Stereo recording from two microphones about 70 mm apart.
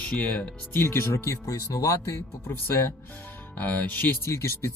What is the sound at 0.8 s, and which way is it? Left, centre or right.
Speech, left.